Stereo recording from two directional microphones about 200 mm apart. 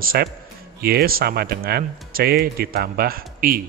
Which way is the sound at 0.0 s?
45° right (ahead or behind).